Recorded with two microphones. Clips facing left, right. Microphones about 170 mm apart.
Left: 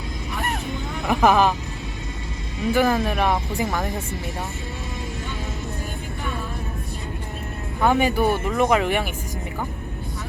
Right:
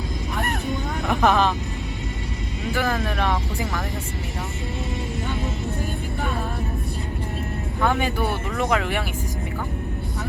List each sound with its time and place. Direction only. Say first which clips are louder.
1.0 s speech: left 2 dB; centre (ahead or behind)
2.7 s speech: left 4 dB; 20° left (ahead or behind)
7.8 s speech: left 4 dB; 15° left (ahead or behind)